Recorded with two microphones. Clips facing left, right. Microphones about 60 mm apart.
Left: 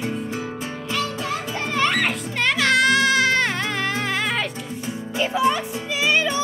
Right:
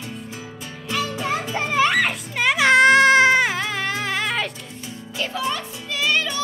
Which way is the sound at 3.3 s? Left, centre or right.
Centre.